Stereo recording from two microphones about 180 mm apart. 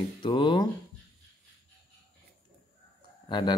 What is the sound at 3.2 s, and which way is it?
Speech, 25° left (ahead or behind).